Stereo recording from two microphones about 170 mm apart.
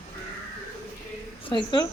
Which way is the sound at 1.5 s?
25° left (ahead or behind).